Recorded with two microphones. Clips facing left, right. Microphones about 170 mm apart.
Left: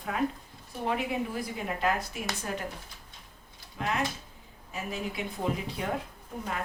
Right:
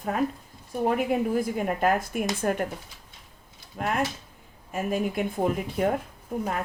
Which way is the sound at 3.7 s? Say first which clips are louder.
Right 4 dB; 50° right (ahead or behind).